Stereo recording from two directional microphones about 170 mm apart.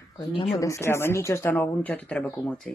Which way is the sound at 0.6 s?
15° left (ahead or behind).